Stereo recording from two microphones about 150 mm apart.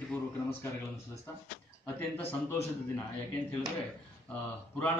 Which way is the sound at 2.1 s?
15° left (ahead or behind).